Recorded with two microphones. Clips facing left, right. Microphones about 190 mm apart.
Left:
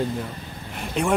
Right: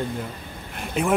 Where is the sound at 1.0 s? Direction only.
5° right (ahead or behind).